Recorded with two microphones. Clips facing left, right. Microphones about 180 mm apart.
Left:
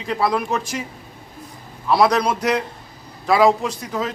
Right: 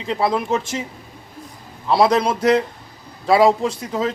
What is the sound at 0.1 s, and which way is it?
Speech, 25° right (ahead or behind).